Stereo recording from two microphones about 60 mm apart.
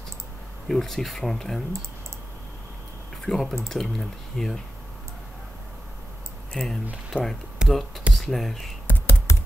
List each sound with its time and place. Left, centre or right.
0.7 s speech: centre
3.3 s speech: centre
6.5 s speech: centre
8.8 s computer keyboard: left